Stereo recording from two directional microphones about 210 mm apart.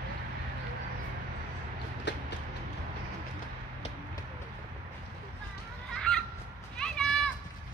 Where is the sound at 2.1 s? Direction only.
55° left (ahead or behind).